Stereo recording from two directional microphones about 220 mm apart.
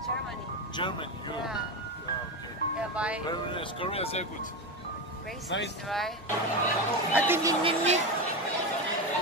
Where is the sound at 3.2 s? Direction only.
20° left (ahead or behind).